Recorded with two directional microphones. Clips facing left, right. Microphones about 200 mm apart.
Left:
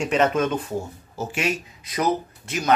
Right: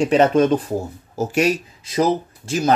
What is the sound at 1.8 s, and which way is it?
Speech, 30° right (ahead or behind).